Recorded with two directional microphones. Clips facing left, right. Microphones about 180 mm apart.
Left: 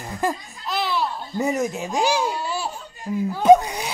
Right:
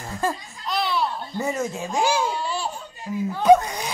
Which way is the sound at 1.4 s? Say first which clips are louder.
Left 3 dB; 15° left (ahead or behind).